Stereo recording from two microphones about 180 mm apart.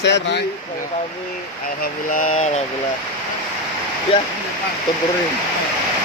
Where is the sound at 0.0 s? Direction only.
75° left (ahead or behind).